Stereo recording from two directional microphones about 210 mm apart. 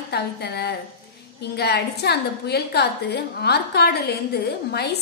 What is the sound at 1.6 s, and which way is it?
A woman's voice, 50° left (ahead or behind).